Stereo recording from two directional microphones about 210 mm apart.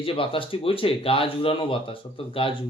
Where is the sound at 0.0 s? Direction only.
25° left (ahead or behind).